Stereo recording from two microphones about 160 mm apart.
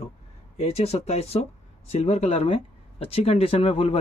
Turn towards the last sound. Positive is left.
turn(degrees=35)  # may be behind; listen again after turning